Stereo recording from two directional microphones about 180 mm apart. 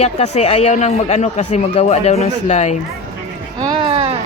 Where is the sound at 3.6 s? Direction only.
25° right (ahead or behind).